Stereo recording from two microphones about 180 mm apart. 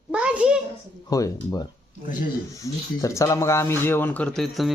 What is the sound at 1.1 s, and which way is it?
A man's voice, 20° left (ahead or behind).